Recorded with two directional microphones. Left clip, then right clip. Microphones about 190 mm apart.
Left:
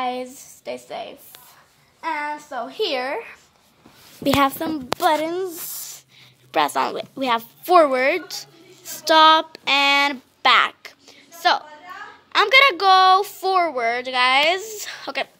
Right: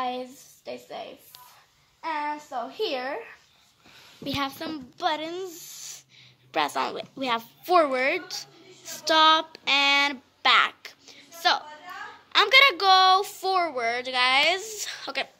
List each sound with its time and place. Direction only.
0.0 s a child's voice: 5° left (ahead or behind)
4.2 s a woman's voice: 50° left (ahead or behind)
4.6 s a woman's voice: 30° left (ahead or behind)